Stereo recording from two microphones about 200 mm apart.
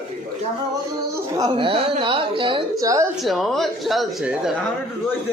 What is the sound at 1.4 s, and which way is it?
A woman's voice, 25° right (ahead or behind).